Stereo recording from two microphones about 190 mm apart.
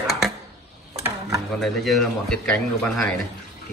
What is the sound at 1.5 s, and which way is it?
A man's voice, centre (ahead or behind).